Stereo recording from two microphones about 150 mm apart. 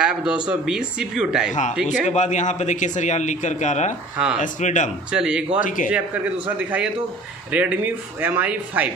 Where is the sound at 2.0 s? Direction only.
50° left (ahead or behind).